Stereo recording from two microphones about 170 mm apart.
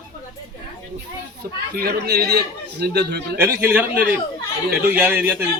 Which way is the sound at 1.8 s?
70° right (ahead or behind).